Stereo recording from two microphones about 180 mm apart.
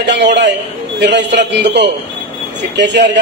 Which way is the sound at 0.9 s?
75° right (ahead or behind).